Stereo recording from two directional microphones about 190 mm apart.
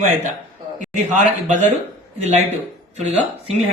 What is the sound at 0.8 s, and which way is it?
A man's voice, 40° right (ahead or behind).